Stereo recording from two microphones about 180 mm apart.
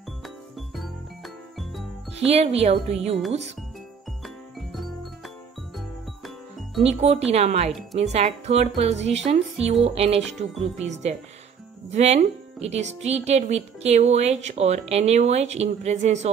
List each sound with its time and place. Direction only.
0.6 s jingle: centre (ahead or behind)
2.1 s speech: 35° right (ahead or behind)
5.8 s music: centre (ahead or behind)
6.8 s speech: 35° right (ahead or behind)